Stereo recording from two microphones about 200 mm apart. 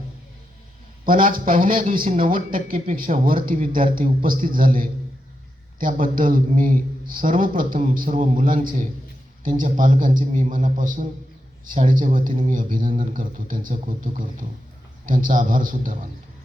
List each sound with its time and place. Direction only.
1.0 s a man's voice: 45° right (ahead or behind)